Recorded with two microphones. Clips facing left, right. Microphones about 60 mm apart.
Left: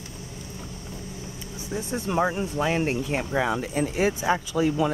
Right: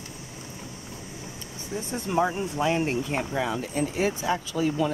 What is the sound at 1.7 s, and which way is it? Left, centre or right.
Speech, left.